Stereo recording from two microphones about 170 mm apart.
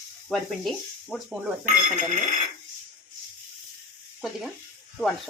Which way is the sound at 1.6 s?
45° right (ahead or behind).